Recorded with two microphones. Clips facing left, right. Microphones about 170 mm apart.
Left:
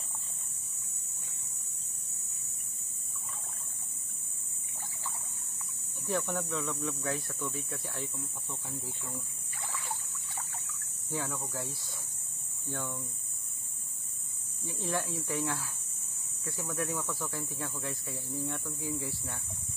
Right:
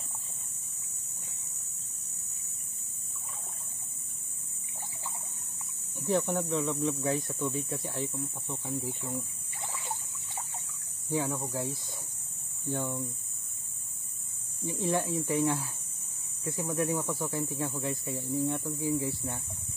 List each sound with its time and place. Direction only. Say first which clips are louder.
5.9 s speech: right 5 dB; 15° right (ahead or behind)
9.7 s a sound: right 1 dB; 20° right (ahead or behind)
12.6 s speech: right 6 dB; 15° right (ahead or behind)
14.7 s speech: right 5 dB; 20° right (ahead or behind)